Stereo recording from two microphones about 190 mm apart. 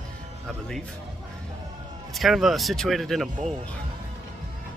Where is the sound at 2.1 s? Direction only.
Centre (ahead or behind).